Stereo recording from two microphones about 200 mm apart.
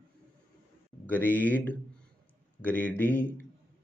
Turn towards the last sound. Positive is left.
turn(degrees=10)  # may be behind; listen again after turning